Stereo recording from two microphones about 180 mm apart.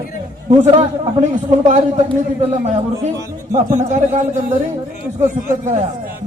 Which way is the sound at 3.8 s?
40° right (ahead or behind).